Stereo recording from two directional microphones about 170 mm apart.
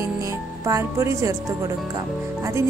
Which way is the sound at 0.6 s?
15° right (ahead or behind).